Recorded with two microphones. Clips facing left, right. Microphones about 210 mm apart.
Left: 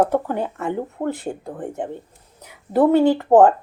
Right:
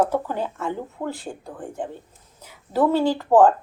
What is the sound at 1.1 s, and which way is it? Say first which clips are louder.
Speech: left 6 dB; 20° left (ahead or behind).